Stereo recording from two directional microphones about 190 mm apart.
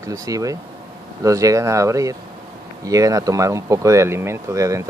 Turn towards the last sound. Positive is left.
turn(degrees=-15)  # may be behind; listen again after turning